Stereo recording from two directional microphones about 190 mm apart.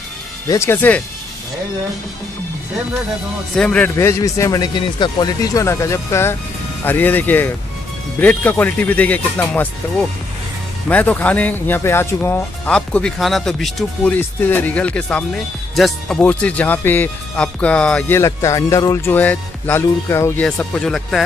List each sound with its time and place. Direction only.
0.5 s speech: 15° left (ahead or behind)
3.5 s speech: 5° left (ahead or behind)
10.9 s speech: 10° left (ahead or behind)